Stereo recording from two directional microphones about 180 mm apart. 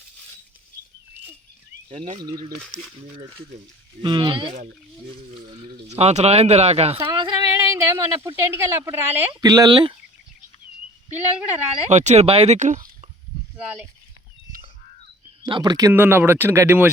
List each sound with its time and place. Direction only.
1.9 s speech: 35° right (ahead or behind)
2.2 s speech: 20° right (ahead or behind)
4.0 s speech: 25° right (ahead or behind)
5.9 s speech: 35° right (ahead or behind)
7.5 s a sound: 15° right (ahead or behind)
8.4 s speech: 15° right (ahead or behind)
9.3 s speech: 20° right (ahead or behind)
11.1 s speech: 10° right (ahead or behind)
11.9 s speech: 40° right (ahead or behind)
13.3 s a sound: 30° left (ahead or behind)
15.4 s speech: 25° right (ahead or behind)
15.9 s speech: 10° right (ahead or behind)